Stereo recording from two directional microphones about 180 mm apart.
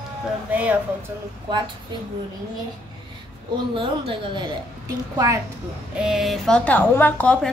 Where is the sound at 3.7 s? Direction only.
30° right (ahead or behind).